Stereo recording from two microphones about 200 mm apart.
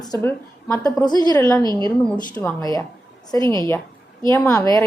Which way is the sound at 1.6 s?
20° right (ahead or behind).